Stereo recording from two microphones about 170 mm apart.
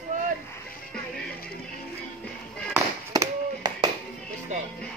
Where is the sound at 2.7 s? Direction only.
20° right (ahead or behind).